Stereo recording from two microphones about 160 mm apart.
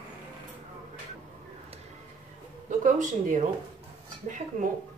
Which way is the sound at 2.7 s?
50° right (ahead or behind).